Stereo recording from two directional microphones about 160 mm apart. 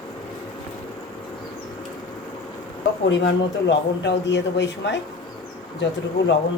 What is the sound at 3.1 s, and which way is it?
Speech, 90° left.